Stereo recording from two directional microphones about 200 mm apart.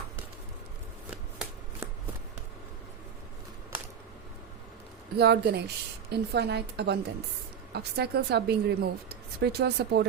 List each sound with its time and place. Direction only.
1.1 s shuffling cards: 5° right (ahead or behind)
5.1 s a woman's voice: 55° right (ahead or behind)